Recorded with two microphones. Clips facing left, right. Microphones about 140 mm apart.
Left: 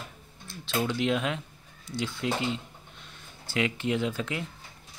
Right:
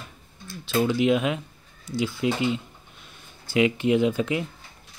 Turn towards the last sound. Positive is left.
turn(degrees=-15)  # may be behind; listen again after turning